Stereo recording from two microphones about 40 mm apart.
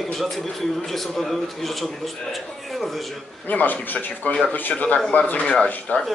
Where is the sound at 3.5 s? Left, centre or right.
Left.